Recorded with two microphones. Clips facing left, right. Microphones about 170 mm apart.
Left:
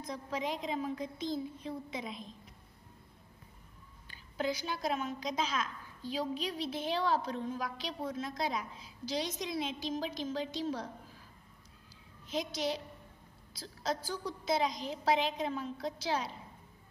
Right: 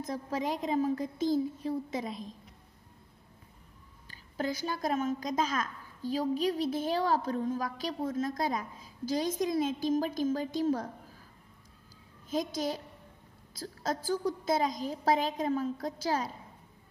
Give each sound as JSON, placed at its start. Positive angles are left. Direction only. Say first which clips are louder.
{"t": 0.0, "sound": "a woman's voice", "louder": "right 4 dB", "side_deg": -45}
{"t": 4.1, "sound": "a woman's voice", "louder": "right 1 dB", "side_deg": -45}
{"t": 12.3, "sound": "a woman's voice", "louder": "right 3 dB", "side_deg": -45}